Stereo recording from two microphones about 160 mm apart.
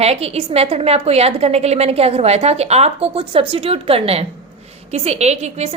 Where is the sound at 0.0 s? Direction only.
40° right (ahead or behind).